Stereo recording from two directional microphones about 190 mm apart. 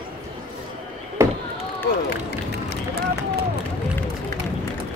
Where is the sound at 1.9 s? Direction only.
60° left (ahead or behind).